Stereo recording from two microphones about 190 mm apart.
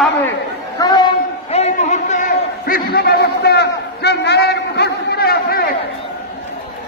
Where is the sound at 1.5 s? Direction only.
35° left (ahead or behind); by 5.7 s 55° left (ahead or behind).